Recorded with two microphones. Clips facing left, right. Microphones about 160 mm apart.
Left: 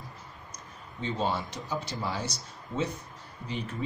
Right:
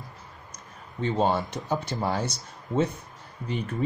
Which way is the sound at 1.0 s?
50° right (ahead or behind).